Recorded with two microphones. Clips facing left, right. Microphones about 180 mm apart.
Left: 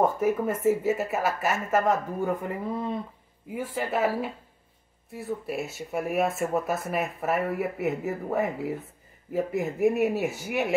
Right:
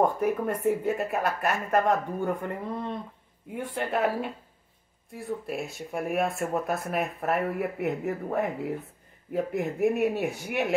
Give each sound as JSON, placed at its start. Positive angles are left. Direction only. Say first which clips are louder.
{"t": 0.0, "sound": "speech", "louder": "left 1 dB", "side_deg": 0}